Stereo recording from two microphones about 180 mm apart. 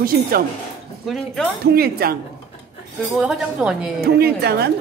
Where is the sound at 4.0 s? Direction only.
60° right (ahead or behind).